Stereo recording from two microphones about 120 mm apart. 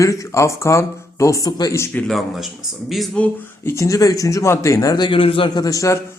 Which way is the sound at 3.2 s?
10° left (ahead or behind).